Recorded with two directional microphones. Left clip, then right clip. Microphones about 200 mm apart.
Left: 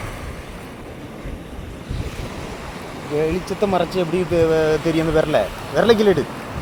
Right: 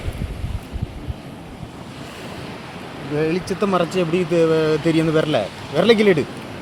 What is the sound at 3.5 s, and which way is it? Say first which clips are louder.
Speech: even; 45° right (ahead or behind).